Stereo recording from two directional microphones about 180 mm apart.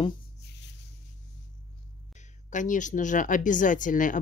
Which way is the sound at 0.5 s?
75° left (ahead or behind).